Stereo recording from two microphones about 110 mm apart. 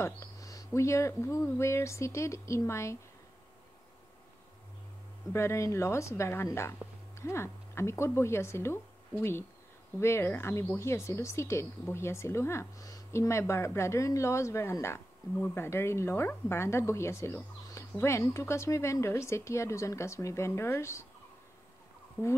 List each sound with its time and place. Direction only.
0.0 s speech: 30° left (ahead or behind)
5.3 s speech: 25° left (ahead or behind)